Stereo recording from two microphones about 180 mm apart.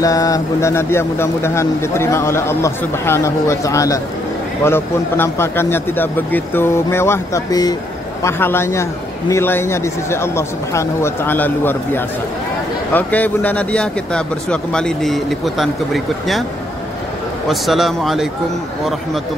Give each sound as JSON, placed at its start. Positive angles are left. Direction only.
{"t": 0.0, "sound": "speech", "side_deg": 20}
{"t": 17.5, "sound": "speech", "side_deg": 0}